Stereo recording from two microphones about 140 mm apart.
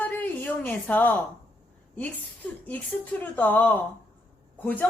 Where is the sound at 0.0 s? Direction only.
10° left (ahead or behind).